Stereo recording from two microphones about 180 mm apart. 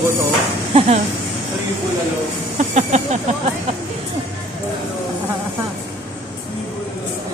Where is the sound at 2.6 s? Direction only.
40° right (ahead or behind).